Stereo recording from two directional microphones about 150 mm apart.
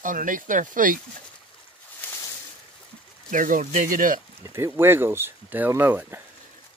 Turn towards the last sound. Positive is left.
turn(degrees=-15)  # may be behind; listen again after turning